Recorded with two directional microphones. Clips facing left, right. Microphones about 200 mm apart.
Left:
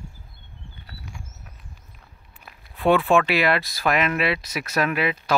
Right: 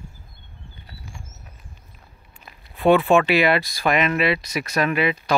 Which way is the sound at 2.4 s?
Centre (ahead or behind).